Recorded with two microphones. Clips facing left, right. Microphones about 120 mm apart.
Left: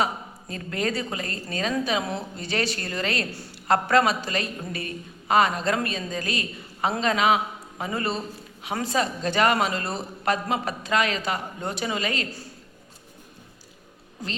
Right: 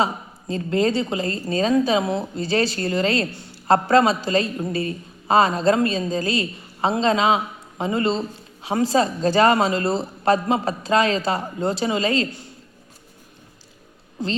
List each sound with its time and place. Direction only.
0.0 s a woman's voice: 25° right (ahead or behind)